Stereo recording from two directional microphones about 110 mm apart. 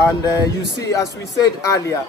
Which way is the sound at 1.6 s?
30° left (ahead or behind).